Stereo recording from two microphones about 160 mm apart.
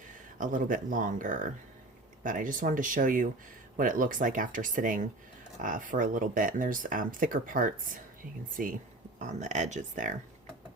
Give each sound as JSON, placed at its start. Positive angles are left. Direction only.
{"t": 0.3, "sound": "speech", "side_deg": -55}